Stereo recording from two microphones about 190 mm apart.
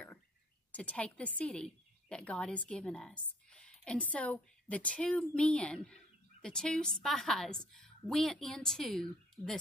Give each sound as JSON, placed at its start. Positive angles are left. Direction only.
{"t": 0.7, "sound": "a woman's voice", "side_deg": 5}